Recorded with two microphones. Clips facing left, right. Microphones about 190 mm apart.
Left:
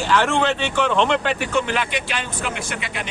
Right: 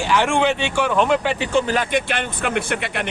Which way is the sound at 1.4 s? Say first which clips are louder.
Right 3 dB; 30° right (ahead or behind).